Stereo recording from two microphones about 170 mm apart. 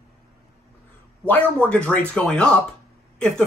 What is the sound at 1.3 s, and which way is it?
Speech, 10° left (ahead or behind).